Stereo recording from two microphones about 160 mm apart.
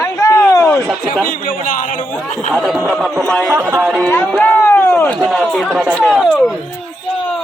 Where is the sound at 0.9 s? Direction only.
Centre (ahead or behind).